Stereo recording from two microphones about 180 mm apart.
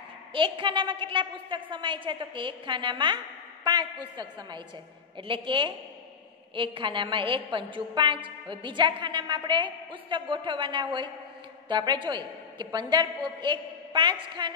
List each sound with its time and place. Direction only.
0.3 s a woman's voice: 25° right (ahead or behind)
4.2 s a woman's voice: 25° right (ahead or behind)